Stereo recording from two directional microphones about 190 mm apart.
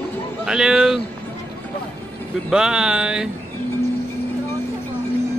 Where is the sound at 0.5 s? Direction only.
5° right (ahead or behind).